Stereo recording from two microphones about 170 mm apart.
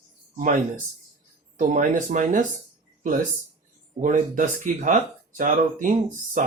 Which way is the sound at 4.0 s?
50° right (ahead or behind).